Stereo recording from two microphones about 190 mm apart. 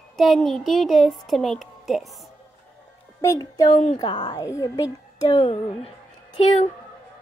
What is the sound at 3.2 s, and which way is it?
Speech, 15° left (ahead or behind).